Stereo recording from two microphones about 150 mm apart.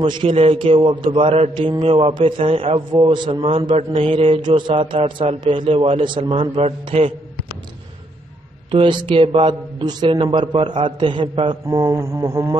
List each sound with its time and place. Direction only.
0.0 s a man's voice: 35° right (ahead or behind)
8.6 s a man's voice: 35° right (ahead or behind)